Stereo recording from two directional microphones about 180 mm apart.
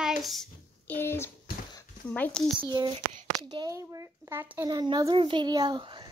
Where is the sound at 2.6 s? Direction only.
20° right (ahead or behind).